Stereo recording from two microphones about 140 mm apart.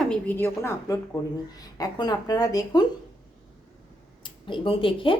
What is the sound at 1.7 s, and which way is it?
Speech, 30° left (ahead or behind).